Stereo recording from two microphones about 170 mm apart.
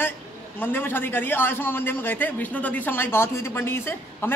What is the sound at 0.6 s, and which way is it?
A man's voice, 10° left (ahead or behind).